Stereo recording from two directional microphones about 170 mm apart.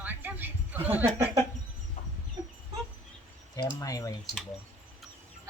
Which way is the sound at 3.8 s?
20° left (ahead or behind).